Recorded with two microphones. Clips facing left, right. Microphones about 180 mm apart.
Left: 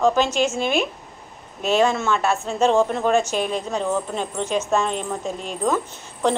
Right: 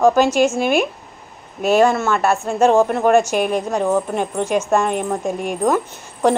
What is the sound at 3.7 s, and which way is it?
A woman's voice, 50° right (ahead or behind).